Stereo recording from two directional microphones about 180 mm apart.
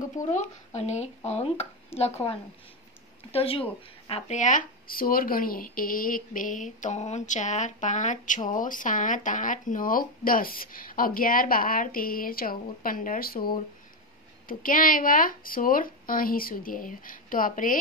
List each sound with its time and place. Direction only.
0.3 s speech: 40° left (ahead or behind); by 13.5 s 55° left (ahead or behind)
14.5 s speech: 50° left (ahead or behind)